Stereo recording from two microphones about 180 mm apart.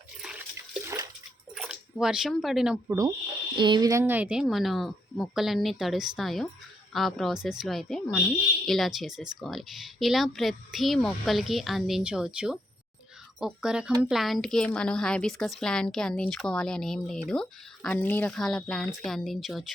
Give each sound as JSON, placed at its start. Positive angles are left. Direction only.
{"t": 0.2, "sound": "water", "side_deg": -5}
{"t": 0.5, "sound": "water", "side_deg": -15}
{"t": 1.5, "sound": "speech", "side_deg": -5}
{"t": 3.6, "sound": "a woman's voice", "side_deg": -25}